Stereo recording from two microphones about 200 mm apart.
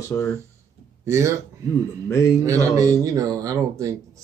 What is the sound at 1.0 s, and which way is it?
Speech, 15° right (ahead or behind).